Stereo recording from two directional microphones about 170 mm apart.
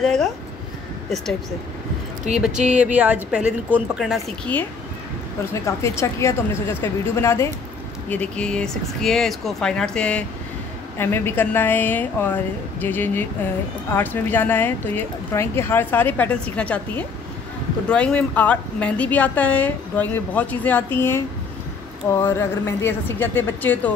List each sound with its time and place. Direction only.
0.0 s a sound: centre (ahead or behind)
2.7 s a woman's voice: 10° right (ahead or behind)
5.5 s a woman's voice: 15° left (ahead or behind)